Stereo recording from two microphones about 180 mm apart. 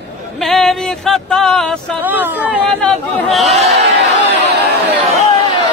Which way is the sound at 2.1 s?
10° right (ahead or behind).